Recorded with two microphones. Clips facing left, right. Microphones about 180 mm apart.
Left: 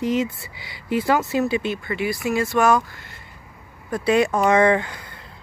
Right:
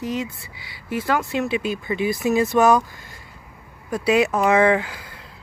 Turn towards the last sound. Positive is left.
turn(degrees=-5)  # may be behind; listen again after turning